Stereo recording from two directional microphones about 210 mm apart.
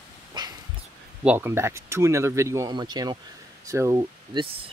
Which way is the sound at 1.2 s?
10° right (ahead or behind).